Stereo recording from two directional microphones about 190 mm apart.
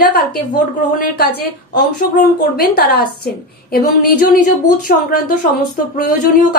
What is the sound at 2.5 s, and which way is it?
A woman's voice, 55° left (ahead or behind).